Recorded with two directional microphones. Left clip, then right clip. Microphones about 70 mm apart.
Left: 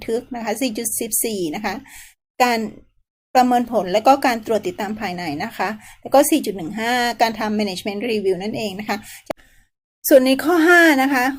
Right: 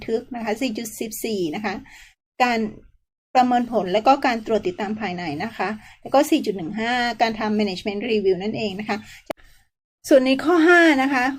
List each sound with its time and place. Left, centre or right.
0.0 s speech: left